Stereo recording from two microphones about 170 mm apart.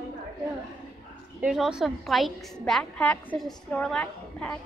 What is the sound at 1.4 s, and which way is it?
A woman's voice, 5° right (ahead or behind).